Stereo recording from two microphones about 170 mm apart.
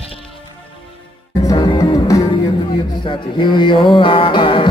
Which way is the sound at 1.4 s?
20° left (ahead or behind).